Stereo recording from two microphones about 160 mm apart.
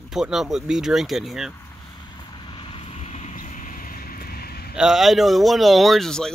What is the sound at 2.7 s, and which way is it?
Vehicle, 40° left (ahead or behind).